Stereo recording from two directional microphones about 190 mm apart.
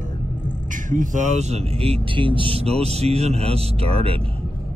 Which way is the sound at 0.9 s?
40° right (ahead or behind).